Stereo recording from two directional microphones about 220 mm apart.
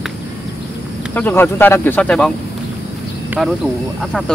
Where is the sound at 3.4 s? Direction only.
Centre (ahead or behind).